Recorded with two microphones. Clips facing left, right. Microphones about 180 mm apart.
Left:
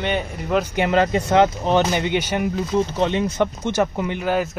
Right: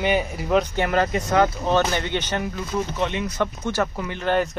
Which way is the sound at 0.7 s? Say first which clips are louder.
Left 3 dB; 20° left (ahead or behind).